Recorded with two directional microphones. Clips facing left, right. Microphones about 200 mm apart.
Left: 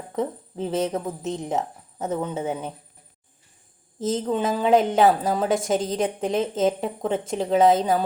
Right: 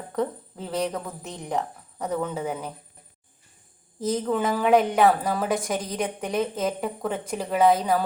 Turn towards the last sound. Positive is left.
turn(degrees=25)  # may be behind; listen again after turning